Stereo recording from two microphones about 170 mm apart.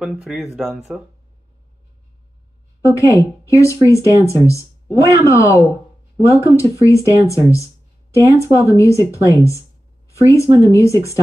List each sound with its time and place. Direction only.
0.0 s speech: 5° right (ahead or behind)
2.8 s speech: 20° left (ahead or behind)